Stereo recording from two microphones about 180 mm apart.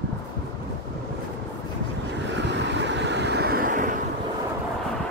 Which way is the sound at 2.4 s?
75° right (ahead or behind).